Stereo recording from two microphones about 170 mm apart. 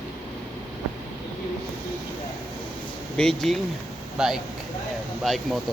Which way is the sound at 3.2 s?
5° left (ahead or behind).